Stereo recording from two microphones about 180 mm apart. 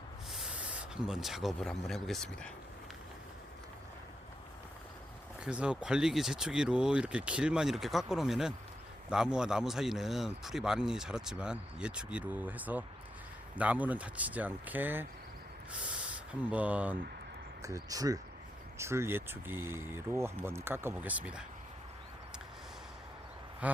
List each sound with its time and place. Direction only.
0.3 s speech: 5° right (ahead or behind)
5.5 s a man's voice: 5° right (ahead or behind)
16.5 s speech: 10° right (ahead or behind)
23.6 s a sound: 10° right (ahead or behind)